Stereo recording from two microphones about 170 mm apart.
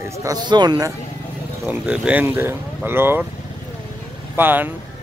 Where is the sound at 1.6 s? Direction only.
5° right (ahead or behind).